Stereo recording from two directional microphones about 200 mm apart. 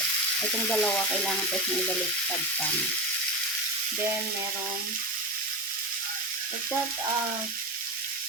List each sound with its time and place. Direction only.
0.7 s frying: 5° left (ahead or behind)